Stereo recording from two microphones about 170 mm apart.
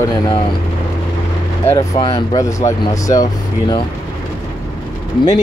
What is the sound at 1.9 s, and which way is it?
Speech, 25° left (ahead or behind).